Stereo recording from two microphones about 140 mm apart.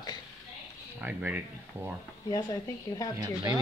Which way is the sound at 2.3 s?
25° left (ahead or behind).